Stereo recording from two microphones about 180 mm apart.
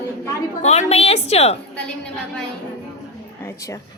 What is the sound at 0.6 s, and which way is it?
A woman's voice, 40° left (ahead or behind).